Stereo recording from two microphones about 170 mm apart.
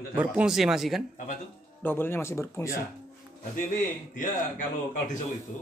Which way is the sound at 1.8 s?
10° left (ahead or behind).